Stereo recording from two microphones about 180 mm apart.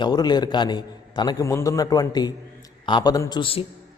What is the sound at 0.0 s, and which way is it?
A man's voice, 25° left (ahead or behind).